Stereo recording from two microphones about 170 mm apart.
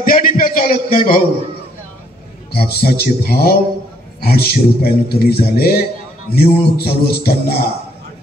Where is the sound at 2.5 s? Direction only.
65° left (ahead or behind).